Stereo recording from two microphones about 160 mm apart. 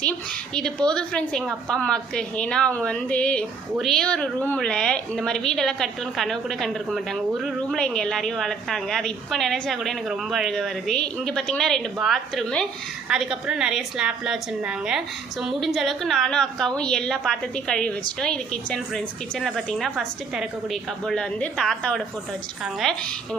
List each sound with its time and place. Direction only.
0.5 s a woman's voice: 5° left (ahead or behind)